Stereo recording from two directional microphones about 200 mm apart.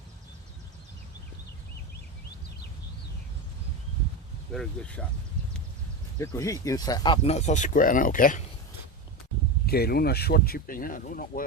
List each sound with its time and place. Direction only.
4.5 s speech: 5° left (ahead or behind)
6.1 s speech: 15° left (ahead or behind); by 8.4 s 45° left (ahead or behind)
9.6 s speech: 50° left (ahead or behind)